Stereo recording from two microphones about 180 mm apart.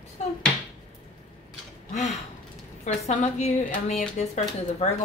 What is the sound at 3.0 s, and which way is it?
A woman's voice, 40° left (ahead or behind).